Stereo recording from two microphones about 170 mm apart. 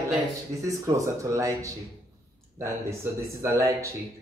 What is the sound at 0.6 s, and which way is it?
Speech, 20° right (ahead or behind).